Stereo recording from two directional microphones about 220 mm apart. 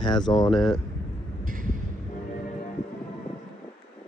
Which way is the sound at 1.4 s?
40° right (ahead or behind).